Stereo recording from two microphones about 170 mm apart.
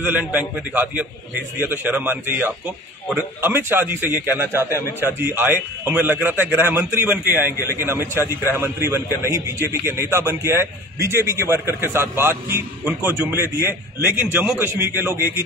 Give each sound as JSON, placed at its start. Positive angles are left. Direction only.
{"t": 0.0, "sound": "a man's voice", "side_deg": -10}